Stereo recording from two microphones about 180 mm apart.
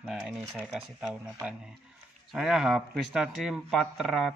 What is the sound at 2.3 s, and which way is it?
Speech, 5° right (ahead or behind).